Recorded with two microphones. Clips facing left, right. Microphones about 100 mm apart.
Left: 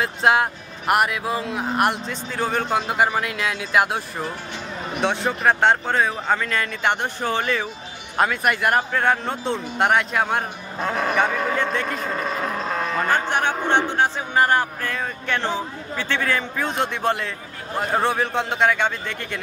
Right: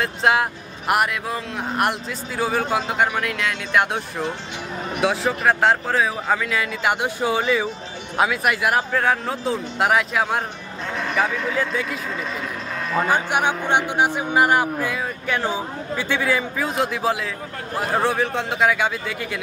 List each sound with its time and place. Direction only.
0.0 s speech: centre (ahead or behind)
10.8 s a sound: 45° left (ahead or behind)
12.1 s music: 45° left (ahead or behind)
13.1 s speech: 10° right (ahead or behind)